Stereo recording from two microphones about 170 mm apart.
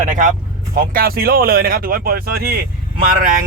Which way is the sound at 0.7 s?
60° right (ahead or behind).